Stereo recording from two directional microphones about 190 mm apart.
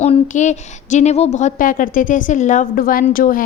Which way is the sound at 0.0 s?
35° left (ahead or behind).